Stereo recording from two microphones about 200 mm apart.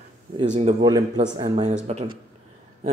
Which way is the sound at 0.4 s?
35° right (ahead or behind).